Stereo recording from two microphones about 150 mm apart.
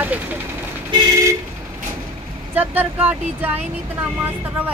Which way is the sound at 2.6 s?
10° right (ahead or behind).